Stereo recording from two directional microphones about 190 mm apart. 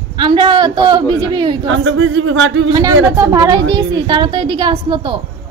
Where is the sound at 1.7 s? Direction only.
90° right.